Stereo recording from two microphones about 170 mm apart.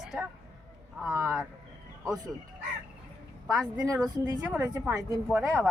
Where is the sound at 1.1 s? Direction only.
15° right (ahead or behind).